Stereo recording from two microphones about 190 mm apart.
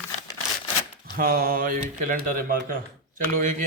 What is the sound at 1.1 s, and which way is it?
Speech, 50° right (ahead or behind).